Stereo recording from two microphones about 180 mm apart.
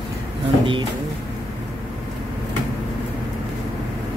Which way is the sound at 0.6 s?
30° right (ahead or behind).